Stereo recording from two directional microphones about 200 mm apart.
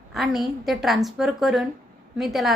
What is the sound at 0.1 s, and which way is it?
A woman's voice, centre (ahead or behind).